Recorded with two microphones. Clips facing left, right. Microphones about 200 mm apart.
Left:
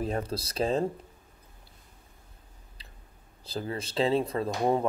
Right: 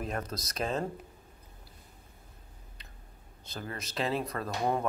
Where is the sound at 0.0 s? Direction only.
30° left (ahead or behind).